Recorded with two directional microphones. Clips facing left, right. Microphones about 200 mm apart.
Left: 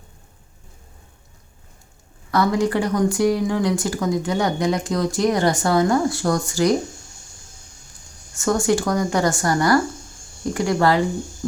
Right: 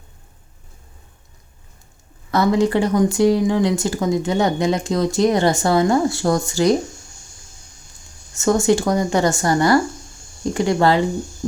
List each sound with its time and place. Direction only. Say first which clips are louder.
2.3 s speech: right 3 dB; 25° right (ahead or behind)
8.4 s speech: right 3 dB; 25° right (ahead or behind)